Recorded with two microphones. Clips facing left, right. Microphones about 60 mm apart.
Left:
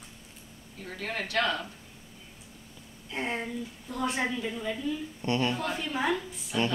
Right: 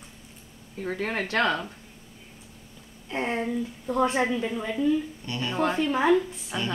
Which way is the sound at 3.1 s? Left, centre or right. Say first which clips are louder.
Right 5 dB; right.